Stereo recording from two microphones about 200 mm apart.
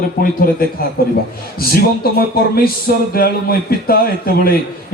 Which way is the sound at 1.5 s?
50° left (ahead or behind).